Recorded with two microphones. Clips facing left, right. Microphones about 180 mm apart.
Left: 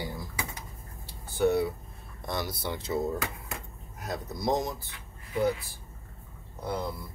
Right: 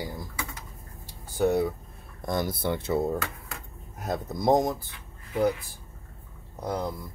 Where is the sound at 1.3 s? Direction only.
45° right (ahead or behind).